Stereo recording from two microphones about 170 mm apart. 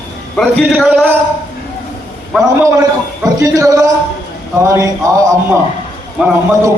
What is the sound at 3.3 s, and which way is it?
Speech, 20° right (ahead or behind).